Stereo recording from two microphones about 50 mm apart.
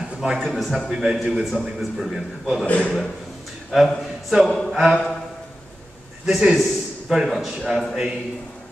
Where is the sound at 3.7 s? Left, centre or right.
Centre.